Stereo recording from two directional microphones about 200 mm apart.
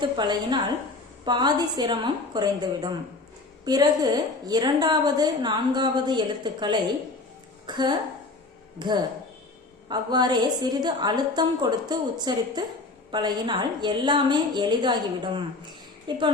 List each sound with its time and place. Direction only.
0.0 s a woman's voice: 20° right (ahead or behind)